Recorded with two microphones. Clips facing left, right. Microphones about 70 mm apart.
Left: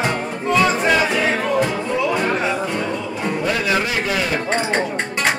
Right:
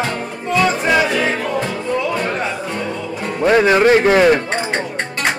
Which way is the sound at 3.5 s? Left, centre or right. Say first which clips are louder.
Right 12 dB; right.